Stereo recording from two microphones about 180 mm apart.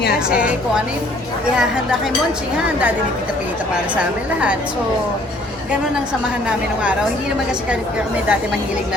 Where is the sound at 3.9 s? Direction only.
5° right (ahead or behind).